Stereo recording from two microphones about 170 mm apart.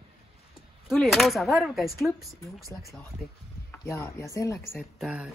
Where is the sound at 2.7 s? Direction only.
10° left (ahead or behind).